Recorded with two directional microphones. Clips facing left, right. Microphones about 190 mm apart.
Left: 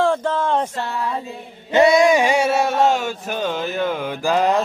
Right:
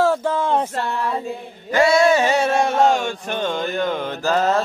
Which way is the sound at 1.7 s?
20° left (ahead or behind).